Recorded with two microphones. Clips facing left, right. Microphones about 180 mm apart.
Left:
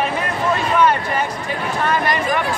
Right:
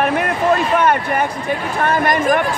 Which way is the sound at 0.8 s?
55° right (ahead or behind).